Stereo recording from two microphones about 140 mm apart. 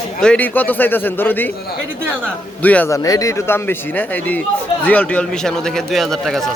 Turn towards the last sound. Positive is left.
turn(degrees=0)  # may be behind; listen again after turning